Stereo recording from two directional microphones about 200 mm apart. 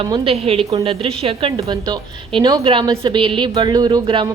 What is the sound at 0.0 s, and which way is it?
A woman's voice, 30° right (ahead or behind).